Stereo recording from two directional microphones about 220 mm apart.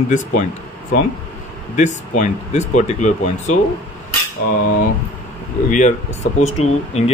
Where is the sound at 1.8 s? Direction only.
35° left (ahead or behind).